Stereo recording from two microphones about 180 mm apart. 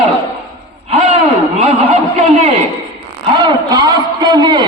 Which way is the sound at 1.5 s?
30° right (ahead or behind).